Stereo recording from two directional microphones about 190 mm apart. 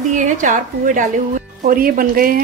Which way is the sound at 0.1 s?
40° right (ahead or behind).